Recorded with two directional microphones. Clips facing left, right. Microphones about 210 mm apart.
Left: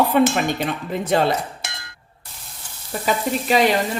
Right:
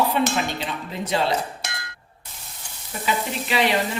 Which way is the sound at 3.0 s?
45° left (ahead or behind).